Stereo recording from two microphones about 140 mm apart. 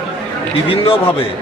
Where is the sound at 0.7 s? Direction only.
40° left (ahead or behind).